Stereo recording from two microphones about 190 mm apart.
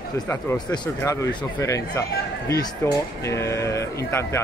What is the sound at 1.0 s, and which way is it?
A man's voice, 15° left (ahead or behind).